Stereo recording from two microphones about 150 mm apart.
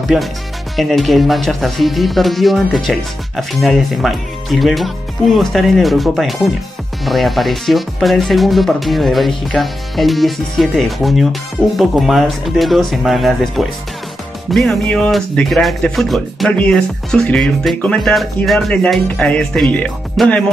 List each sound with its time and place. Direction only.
0.0 s speech: centre (ahead or behind)